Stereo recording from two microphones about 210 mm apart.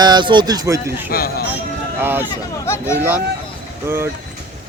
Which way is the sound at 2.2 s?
10° left (ahead or behind).